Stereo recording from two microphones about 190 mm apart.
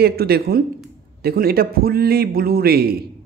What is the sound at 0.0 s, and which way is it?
Speech, 55° right (ahead or behind).